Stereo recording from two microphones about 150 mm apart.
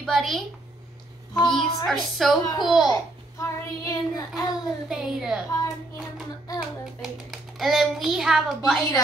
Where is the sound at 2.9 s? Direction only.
20° left (ahead or behind).